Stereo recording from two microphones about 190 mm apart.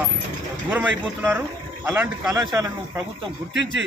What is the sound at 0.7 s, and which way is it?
Speech, 10° right (ahead or behind).